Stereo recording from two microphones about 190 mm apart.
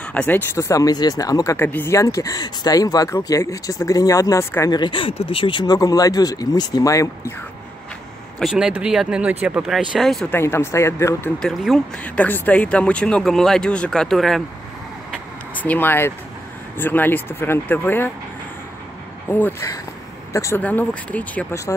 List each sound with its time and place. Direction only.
0.0 s speech: 5° left (ahead or behind)
8.4 s speech: centre (ahead or behind)
10.3 s speech: 15° left (ahead or behind)
15.5 s speech: 10° left (ahead or behind)
19.2 s speech: 10° left (ahead or behind)